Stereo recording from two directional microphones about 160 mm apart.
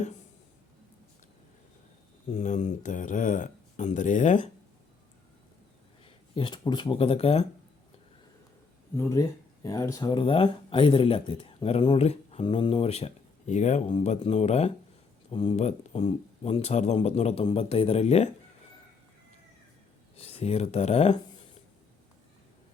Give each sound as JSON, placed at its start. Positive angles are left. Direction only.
{"t": 2.3, "sound": "speech", "side_deg": 50}
{"t": 6.3, "sound": "speech", "side_deg": 30}
{"t": 9.0, "sound": "speech", "side_deg": 20}
{"t": 20.1, "sound": "speech", "side_deg": 40}